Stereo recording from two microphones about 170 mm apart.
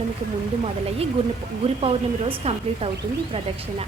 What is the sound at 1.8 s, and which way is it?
A woman's voice, 35° right (ahead or behind).